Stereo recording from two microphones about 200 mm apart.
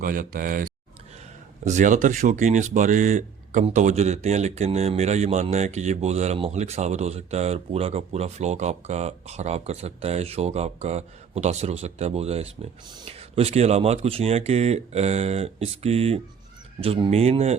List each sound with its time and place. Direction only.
0.0 s speech: 45° right (ahead or behind)